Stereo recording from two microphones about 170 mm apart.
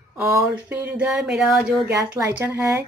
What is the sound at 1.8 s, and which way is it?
Speech, 15° right (ahead or behind).